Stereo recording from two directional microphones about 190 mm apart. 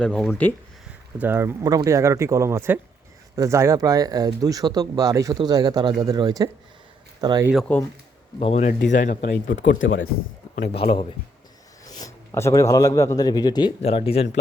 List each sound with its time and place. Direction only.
0.0 s speech: 5° left (ahead or behind)
1.2 s speech: 10° right (ahead or behind)
7.4 s speech: centre (ahead or behind)
8.4 s speech: 35° left (ahead or behind)
9.2 s speech: 60° left (ahead or behind)
9.8 s speech: 80° left
10.7 s speech: 30° left (ahead or behind)
11.9 s a man's voice: 20° left (ahead or behind)